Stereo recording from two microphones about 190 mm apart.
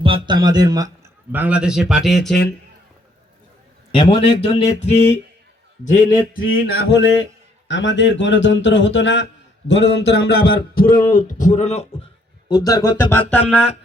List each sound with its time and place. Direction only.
0.0 s speech: 25° right (ahead or behind)
1.3 s a man's voice: 10° right (ahead or behind)
3.9 s a man's voice: 30° left (ahead or behind)
6.7 s a man's voice: 60° left (ahead or behind)
7.7 s a man's voice: 75° left (ahead or behind); by 11.9 s 35° left (ahead or behind)
12.5 s music: 20° left (ahead or behind)